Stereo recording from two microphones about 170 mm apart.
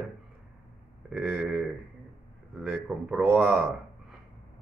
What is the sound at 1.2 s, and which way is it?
Speech, 10° right (ahead or behind).